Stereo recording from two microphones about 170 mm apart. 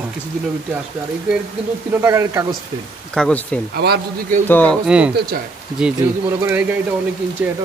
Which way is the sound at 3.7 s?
70° right (ahead or behind).